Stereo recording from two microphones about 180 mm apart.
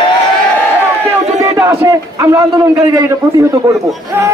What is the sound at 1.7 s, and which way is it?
A man's voice, 15° right (ahead or behind).